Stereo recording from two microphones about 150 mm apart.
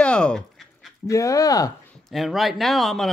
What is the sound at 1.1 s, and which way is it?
Speech, 20° left (ahead or behind).